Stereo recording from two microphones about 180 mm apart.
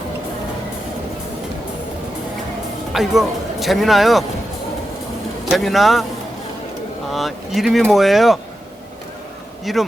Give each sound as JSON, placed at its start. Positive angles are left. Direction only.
{"t": 2.9, "sound": "speech", "side_deg": 0}
{"t": 5.5, "sound": "speech", "side_deg": 0}
{"t": 7.1, "sound": "speech", "side_deg": 0}
{"t": 9.7, "sound": "speech", "side_deg": 0}